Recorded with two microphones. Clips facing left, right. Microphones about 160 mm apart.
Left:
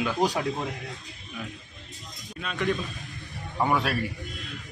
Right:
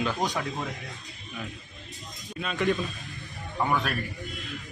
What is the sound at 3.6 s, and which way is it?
Speech, 10° left (ahead or behind).